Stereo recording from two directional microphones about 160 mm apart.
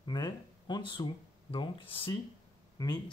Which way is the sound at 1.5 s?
30° left (ahead or behind).